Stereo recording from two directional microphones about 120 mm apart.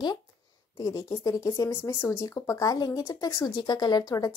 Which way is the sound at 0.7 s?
30° left (ahead or behind).